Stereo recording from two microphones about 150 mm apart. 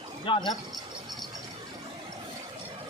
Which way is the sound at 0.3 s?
35° left (ahead or behind).